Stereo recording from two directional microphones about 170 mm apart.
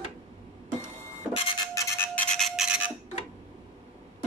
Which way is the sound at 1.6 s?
15° left (ahead or behind).